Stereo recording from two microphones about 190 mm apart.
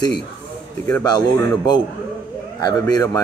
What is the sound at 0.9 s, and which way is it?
Speech, 20° left (ahead or behind).